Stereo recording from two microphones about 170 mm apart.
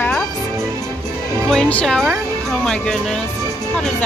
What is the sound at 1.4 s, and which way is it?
Speech, 5° left (ahead or behind).